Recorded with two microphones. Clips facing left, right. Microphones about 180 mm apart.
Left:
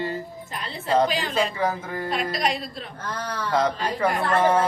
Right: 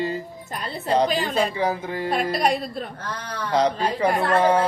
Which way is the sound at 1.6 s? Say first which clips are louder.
Right 2 dB; 20° right (ahead or behind).